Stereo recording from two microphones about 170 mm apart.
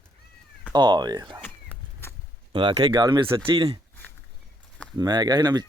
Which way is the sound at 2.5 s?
30° right (ahead or behind).